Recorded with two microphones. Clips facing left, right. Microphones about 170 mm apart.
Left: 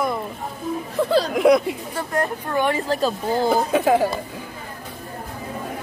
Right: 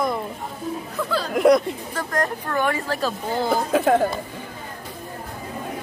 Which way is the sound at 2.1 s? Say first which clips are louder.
Left 1 dB; 10° left (ahead or behind).